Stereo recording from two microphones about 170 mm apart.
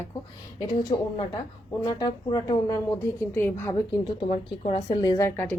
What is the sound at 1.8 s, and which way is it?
A woman's voice, 25° left (ahead or behind).